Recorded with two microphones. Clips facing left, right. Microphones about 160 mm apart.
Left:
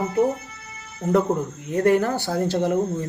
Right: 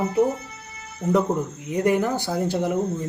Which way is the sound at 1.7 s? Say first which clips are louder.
Left 2 dB; 10° right (ahead or behind).